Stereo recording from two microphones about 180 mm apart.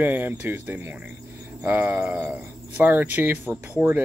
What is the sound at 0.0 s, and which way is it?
Speech, 10° right (ahead or behind).